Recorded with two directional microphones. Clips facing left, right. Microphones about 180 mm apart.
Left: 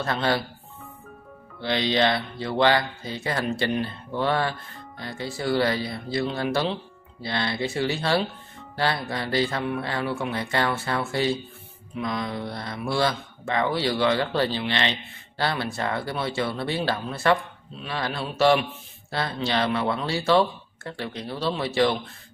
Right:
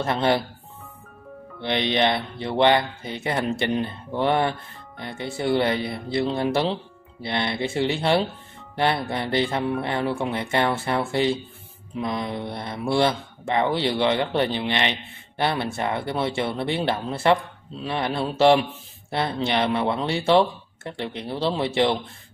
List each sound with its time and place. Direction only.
0.0 s speech: 25° right (ahead or behind)
1.6 s speech: 20° right (ahead or behind)